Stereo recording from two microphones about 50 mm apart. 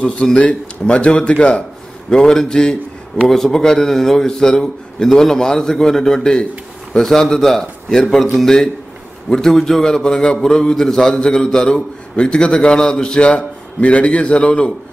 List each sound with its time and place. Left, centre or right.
0.0 s a man's voice: centre
3.2 s a man's voice: centre; by 14.7 s left